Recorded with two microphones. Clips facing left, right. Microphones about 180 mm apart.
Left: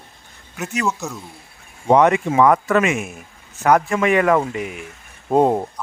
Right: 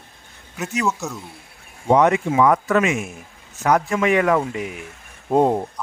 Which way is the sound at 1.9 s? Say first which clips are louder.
Left 2 dB; 65° left (ahead or behind).